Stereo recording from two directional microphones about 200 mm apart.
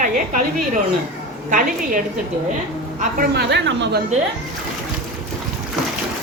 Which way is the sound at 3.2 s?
55° right (ahead or behind).